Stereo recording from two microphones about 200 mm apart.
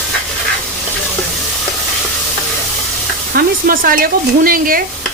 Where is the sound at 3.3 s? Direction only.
45° right (ahead or behind).